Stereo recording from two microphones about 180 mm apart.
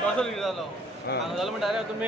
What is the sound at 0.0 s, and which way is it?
A man's voice, 5° left (ahead or behind).